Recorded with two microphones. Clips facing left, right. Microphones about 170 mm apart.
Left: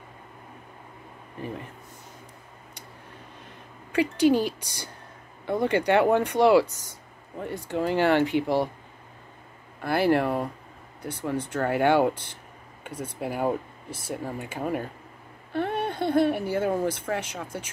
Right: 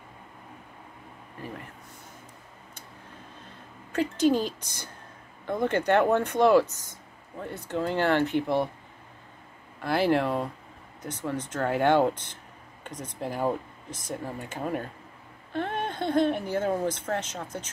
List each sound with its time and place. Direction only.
1.4 s speech: 20° left (ahead or behind)
3.9 s speech: 10° left (ahead or behind)
9.8 s speech: 5° left (ahead or behind)